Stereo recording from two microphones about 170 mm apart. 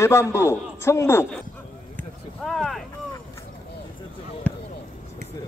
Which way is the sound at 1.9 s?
5° left (ahead or behind).